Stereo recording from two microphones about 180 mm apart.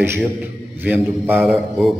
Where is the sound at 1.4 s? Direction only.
Centre (ahead or behind).